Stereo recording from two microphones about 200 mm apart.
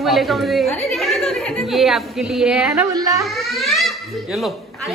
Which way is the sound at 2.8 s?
15° right (ahead or behind).